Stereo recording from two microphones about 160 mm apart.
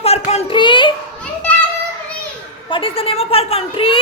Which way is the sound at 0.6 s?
30° left (ahead or behind).